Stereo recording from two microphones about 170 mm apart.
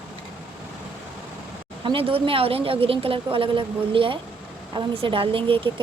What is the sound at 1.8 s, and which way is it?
A woman's voice, 30° right (ahead or behind).